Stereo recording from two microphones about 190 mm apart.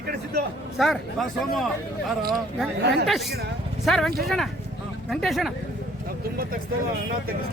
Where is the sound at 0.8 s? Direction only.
Centre (ahead or behind).